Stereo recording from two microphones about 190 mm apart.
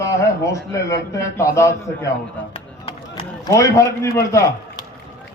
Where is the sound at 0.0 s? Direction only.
15° left (ahead or behind).